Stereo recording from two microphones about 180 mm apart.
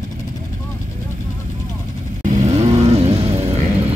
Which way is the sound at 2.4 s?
35° right (ahead or behind).